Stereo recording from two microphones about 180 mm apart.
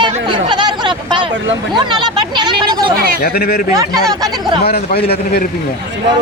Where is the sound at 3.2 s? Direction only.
60° left (ahead or behind).